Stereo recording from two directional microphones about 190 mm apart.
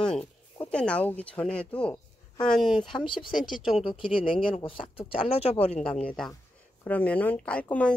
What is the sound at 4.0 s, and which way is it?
Speech, 25° left (ahead or behind).